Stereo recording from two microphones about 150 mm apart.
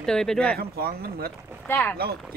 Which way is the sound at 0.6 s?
90° right.